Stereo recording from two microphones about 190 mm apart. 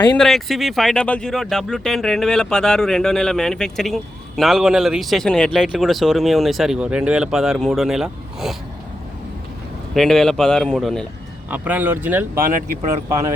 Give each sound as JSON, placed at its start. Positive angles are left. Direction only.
{"t": 0.2, "sound": "speech", "side_deg": 0}
{"t": 9.9, "sound": "speech", "side_deg": 0}
{"t": 11.4, "sound": "speech", "side_deg": -10}
{"t": 12.4, "sound": "speech", "side_deg": -45}